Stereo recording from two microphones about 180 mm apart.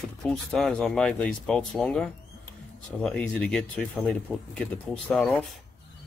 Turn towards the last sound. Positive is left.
turn(degrees=5)  # may be behind; listen again after turning